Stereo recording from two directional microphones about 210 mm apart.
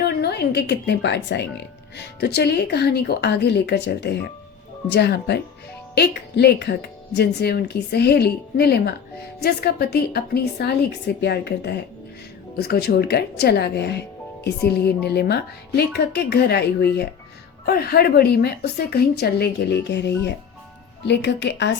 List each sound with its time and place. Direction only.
0.0 s speech: 50° left (ahead or behind)